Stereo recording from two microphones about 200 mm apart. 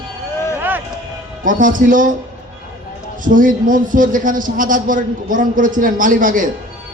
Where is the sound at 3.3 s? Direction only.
40° right (ahead or behind).